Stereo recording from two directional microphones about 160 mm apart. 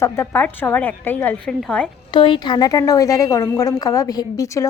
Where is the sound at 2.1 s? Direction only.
30° left (ahead or behind).